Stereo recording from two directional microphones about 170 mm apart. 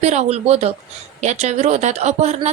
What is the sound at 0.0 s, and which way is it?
Speech, 40° right (ahead or behind).